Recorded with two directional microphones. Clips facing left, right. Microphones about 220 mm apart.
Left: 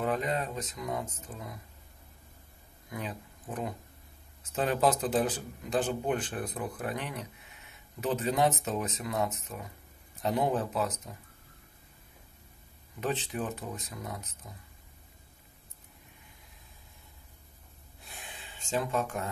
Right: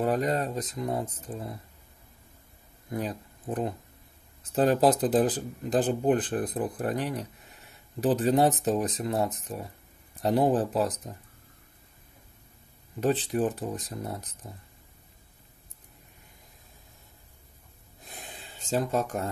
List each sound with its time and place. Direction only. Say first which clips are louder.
0.0 s speech: right 5 dB; 40° right (ahead or behind)
2.9 s speech: right 6 dB; 35° right (ahead or behind)
13.0 s speech: right 7 dB; 35° right (ahead or behind)
18.0 s a sound: right 3 dB; 40° right (ahead or behind)